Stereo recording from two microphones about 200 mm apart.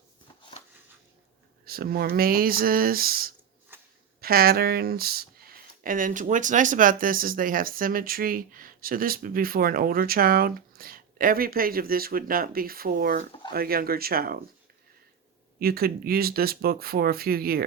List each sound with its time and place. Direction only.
1.6 s speech: 50° right (ahead or behind)
3.7 s a sound: 10° right (ahead or behind)
4.2 s speech: 50° right (ahead or behind)
15.5 s speech: 50° right (ahead or behind)